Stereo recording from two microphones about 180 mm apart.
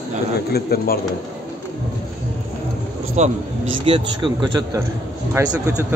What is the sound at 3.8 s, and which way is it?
Speech, 30° right (ahead or behind).